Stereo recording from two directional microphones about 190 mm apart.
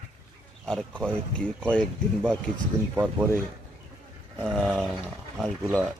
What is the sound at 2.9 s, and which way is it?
Speech, 10° right (ahead or behind).